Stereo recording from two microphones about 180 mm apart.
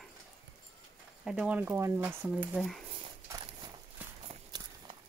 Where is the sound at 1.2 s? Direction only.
5° right (ahead or behind).